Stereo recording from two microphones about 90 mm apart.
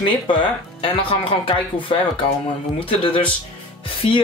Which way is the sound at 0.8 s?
90° left.